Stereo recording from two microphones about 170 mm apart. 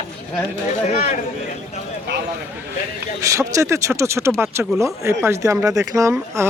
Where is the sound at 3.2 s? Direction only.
20° right (ahead or behind).